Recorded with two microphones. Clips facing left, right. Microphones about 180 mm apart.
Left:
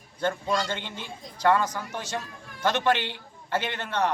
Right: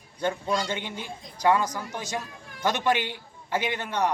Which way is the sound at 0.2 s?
15° right (ahead or behind).